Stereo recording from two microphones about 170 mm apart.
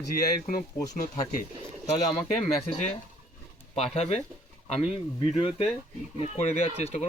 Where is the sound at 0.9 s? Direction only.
55° left (ahead or behind).